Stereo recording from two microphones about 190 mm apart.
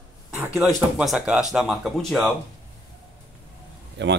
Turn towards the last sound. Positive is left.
turn(degrees=-65)  # may be behind; listen again after turning